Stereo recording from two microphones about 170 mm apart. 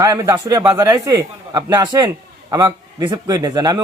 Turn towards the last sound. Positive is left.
turn(degrees=-20)  # may be behind; listen again after turning